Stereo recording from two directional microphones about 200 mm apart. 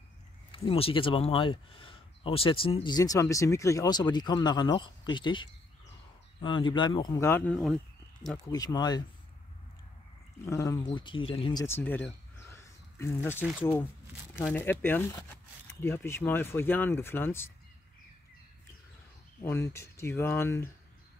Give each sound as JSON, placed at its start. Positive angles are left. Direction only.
{"t": 0.5, "sound": "speech", "side_deg": 30}
{"t": 8.5, "sound": "speech", "side_deg": 20}
{"t": 10.4, "sound": "speech", "side_deg": 15}
{"t": 11.6, "sound": "cricket", "side_deg": 10}
{"t": 13.6, "sound": "speech", "side_deg": 10}
{"t": 19.4, "sound": "speech", "side_deg": 15}